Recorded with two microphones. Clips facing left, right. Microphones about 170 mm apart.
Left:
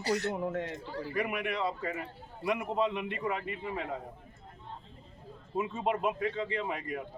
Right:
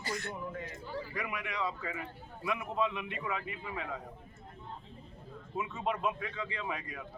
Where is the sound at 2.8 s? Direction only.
35° left (ahead or behind).